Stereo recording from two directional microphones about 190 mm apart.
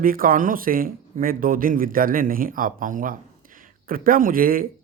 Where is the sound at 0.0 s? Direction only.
50° right (ahead or behind).